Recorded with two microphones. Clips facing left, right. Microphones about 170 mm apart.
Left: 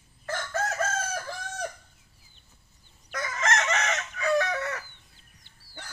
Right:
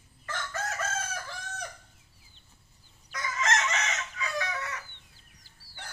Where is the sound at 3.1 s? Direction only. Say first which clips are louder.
Left 2 dB; 55° left (ahead or behind).